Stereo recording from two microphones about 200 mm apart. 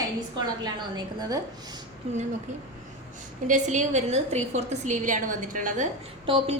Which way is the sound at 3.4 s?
35° right (ahead or behind).